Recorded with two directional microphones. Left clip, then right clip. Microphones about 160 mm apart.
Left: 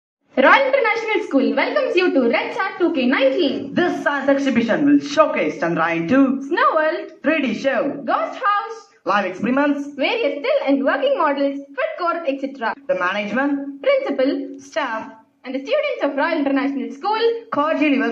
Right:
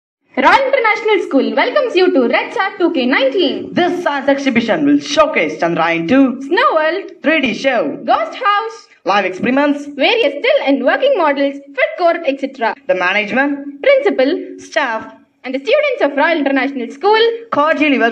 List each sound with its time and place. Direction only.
0.7 s a woman's voice: 35° right (ahead or behind)